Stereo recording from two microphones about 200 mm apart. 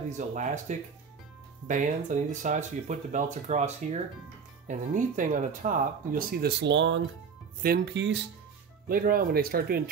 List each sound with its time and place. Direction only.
0.3 s speech: 40° right (ahead or behind); by 7.0 s 65° right (ahead or behind)
7.6 s speech: 55° right (ahead or behind)
8.8 s speech: 45° right (ahead or behind)